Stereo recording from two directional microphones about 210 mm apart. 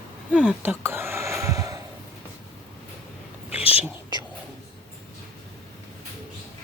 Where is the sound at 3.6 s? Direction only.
30° left (ahead or behind).